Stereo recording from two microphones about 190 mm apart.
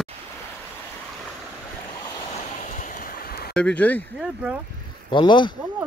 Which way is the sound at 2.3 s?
45° left (ahead or behind).